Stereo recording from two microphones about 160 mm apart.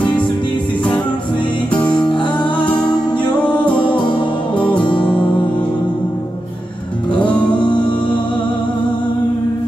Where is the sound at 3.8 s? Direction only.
30° left (ahead or behind).